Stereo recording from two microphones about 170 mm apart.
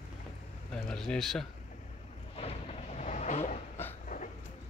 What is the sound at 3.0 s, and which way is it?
Vehicle, 45° left (ahead or behind).